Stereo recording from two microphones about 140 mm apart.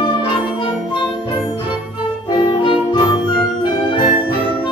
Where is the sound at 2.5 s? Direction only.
35° left (ahead or behind).